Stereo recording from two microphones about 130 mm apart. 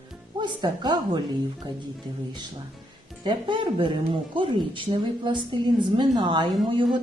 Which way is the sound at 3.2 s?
35° right (ahead or behind).